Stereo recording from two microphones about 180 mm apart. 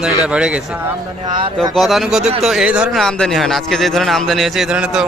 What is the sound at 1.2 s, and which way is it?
Speech, 25° right (ahead or behind).